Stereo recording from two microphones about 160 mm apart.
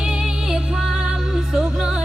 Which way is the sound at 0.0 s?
5° right (ahead or behind).